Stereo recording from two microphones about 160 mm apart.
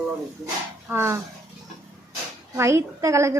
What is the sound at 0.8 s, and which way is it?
Speech, 15° right (ahead or behind).